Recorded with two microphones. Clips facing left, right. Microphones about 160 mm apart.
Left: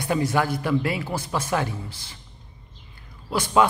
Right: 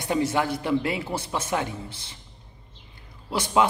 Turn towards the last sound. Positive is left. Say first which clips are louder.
# left 2 dB
turn(degrees=-25)  # may be behind; listen again after turning